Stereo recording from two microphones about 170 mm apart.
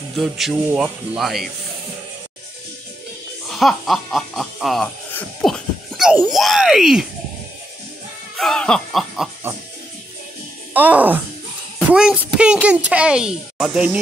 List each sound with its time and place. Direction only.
0.1 s speech: centre (ahead or behind)
3.4 s speech: centre (ahead or behind)
8.4 s speech: 5° left (ahead or behind)
10.7 s speech: 10° right (ahead or behind)